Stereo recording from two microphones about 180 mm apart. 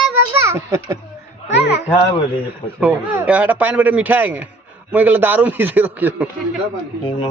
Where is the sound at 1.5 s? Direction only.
70° left (ahead or behind).